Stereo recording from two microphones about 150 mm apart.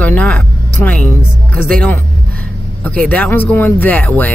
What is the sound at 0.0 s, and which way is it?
Speech, 10° left (ahead or behind).